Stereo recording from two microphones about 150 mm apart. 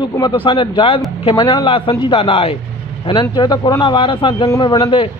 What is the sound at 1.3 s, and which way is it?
Speech, 25° left (ahead or behind).